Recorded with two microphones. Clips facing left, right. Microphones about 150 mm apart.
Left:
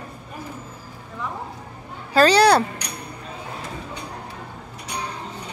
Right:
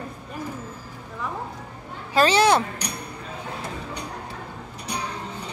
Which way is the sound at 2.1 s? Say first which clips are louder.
Left 3 dB; 35° left (ahead or behind).